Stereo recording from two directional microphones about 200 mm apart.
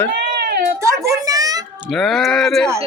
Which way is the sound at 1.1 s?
15° right (ahead or behind).